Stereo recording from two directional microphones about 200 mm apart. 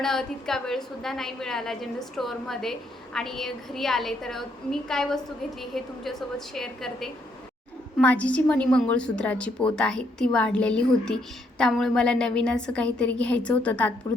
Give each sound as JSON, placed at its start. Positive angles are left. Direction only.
{"t": 0.0, "sound": "a woman's voice", "side_deg": 0}